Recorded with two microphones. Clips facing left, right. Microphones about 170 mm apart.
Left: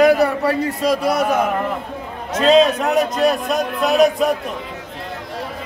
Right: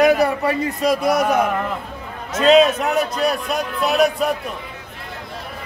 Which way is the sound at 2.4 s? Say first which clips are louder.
Even; 5° right (ahead or behind).